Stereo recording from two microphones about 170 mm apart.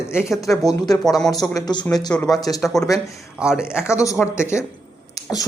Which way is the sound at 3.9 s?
20° left (ahead or behind).